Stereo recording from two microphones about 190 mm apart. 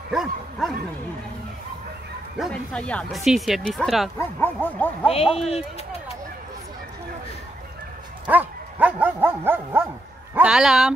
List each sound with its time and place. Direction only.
0.1 s speech: centre (ahead or behind)
2.3 s speech: centre (ahead or behind)
4.4 s speech: 10° left (ahead or behind)
5.0 s speech: 30° left (ahead or behind)
8.3 s dog: 10° right (ahead or behind)
10.3 s speech: 5° right (ahead or behind)